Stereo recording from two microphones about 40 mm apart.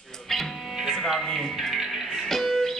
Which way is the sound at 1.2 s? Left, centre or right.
Centre.